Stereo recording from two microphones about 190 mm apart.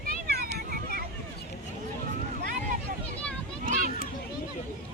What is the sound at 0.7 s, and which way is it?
Vehicle, 50° right (ahead or behind).